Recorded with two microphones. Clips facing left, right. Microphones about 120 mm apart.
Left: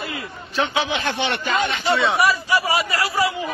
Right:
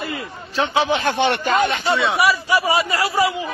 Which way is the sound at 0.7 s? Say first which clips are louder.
Right 5 dB; 40° right (ahead or behind).